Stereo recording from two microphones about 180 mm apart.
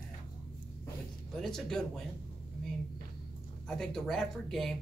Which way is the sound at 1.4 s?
5° left (ahead or behind).